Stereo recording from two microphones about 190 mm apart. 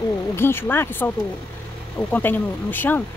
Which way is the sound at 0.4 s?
10° left (ahead or behind).